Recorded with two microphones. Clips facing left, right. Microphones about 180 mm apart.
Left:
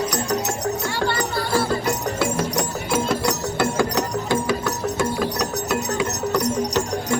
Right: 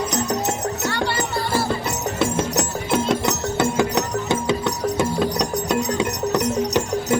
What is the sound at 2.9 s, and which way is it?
Music, 20° right (ahead or behind).